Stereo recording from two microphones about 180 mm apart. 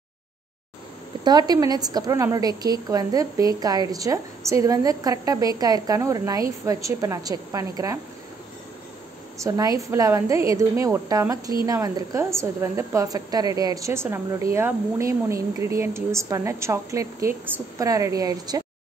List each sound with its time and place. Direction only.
1.2 s a woman's voice: 20° right (ahead or behind)
9.4 s a woman's voice: 20° right (ahead or behind)